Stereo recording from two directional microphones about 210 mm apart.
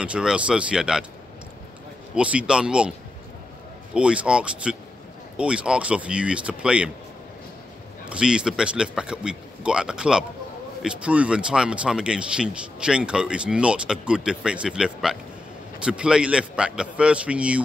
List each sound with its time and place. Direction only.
0.0 s speech: 5° right (ahead or behind)
2.1 s speech: 5° right (ahead or behind)
3.9 s speech: 5° right (ahead or behind)
8.0 s speech: 5° right (ahead or behind)